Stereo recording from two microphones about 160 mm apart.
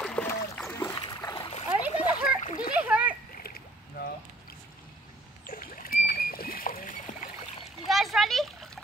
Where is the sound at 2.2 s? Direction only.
60° left (ahead or behind).